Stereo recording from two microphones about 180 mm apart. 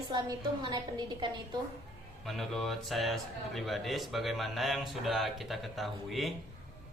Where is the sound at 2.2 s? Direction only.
Centre (ahead or behind).